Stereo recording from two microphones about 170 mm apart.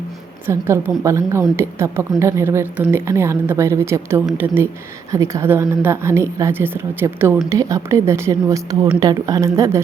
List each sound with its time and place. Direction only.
0.4 s a woman's voice: 15° right (ahead or behind)